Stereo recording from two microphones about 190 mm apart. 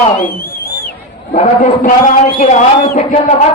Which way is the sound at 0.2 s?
50° left (ahead or behind).